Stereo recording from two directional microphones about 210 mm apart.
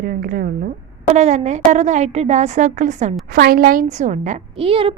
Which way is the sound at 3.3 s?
45° right (ahead or behind).